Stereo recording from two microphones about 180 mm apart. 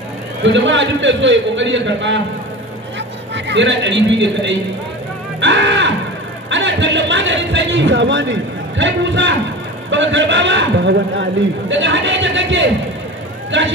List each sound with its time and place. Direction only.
0.4 s a man's voice: 90° right
3.3 s a man's voice: 80° right
5.4 s music: 80° right
6.5 s a man's voice: 90° right
11.7 s a man's voice: 90° right